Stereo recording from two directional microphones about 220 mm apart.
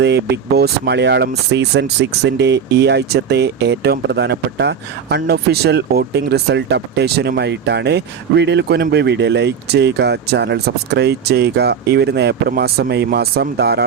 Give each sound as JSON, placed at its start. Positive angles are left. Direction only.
{"t": 0.0, "sound": "speech", "side_deg": -50}